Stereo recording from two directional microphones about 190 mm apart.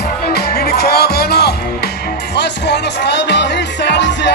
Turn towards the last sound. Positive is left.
turn(degrees=65)  # may be behind; listen again after turning